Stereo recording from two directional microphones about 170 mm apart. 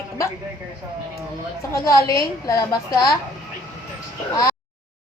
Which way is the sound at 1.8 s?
20° left (ahead or behind).